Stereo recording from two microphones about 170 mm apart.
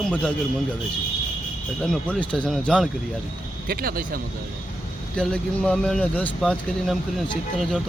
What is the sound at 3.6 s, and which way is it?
Speech, 60° right (ahead or behind).